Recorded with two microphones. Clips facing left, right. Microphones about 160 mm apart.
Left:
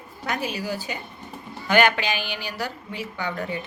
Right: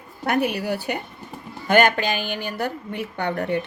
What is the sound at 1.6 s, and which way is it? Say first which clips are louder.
A woman's voice: right 2 dB; 50° right (ahead or behind).